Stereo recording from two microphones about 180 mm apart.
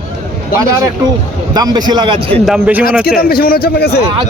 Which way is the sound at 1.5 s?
20° right (ahead or behind).